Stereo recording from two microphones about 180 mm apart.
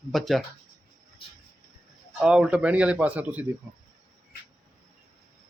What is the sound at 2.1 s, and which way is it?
Speech, 5° right (ahead or behind).